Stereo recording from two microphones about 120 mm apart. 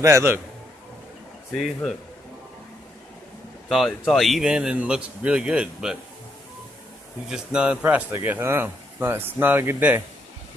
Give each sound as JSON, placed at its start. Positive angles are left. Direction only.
{"t": 0.0, "sound": "a man's voice", "side_deg": -25}
{"t": 1.5, "sound": "speech", "side_deg": 5}
{"t": 3.6, "sound": "speech", "side_deg": 0}
{"t": 7.2, "sound": "speech", "side_deg": -5}